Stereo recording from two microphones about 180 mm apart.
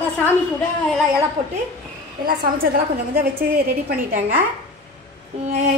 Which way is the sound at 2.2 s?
55° right (ahead or behind).